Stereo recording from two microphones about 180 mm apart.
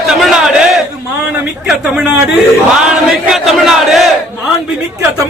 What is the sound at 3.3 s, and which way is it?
Speech, centre (ahead or behind).